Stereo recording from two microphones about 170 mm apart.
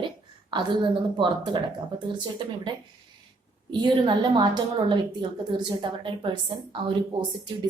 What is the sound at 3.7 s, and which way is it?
A woman's voice, 25° right (ahead or behind).